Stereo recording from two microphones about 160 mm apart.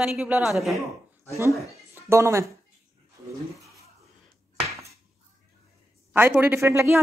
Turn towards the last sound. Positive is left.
turn(degrees=-15)  # may be behind; listen again after turning